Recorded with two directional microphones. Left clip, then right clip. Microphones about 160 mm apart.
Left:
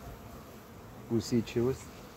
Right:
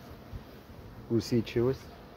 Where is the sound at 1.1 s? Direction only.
55° right (ahead or behind).